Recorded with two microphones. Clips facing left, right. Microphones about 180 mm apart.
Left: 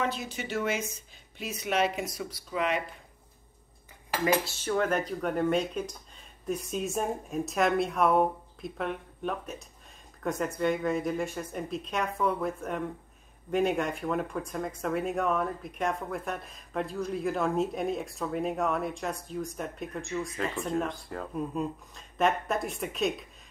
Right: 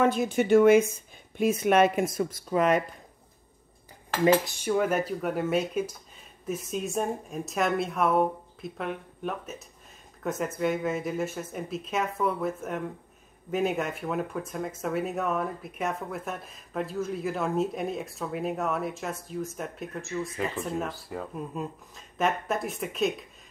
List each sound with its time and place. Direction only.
0.0 s speech: 50° right (ahead or behind)
4.5 s speech: 10° right (ahead or behind)